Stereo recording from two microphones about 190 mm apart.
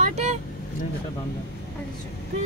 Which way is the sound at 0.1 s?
35° right (ahead or behind).